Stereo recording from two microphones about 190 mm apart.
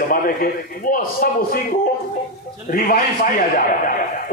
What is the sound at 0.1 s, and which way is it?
A man's voice, 50° left (ahead or behind).